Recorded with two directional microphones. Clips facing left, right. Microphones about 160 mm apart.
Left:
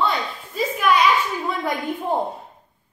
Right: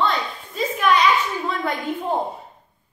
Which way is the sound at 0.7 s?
5° left (ahead or behind).